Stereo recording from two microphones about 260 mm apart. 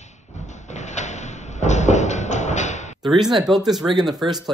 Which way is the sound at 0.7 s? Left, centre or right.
Left.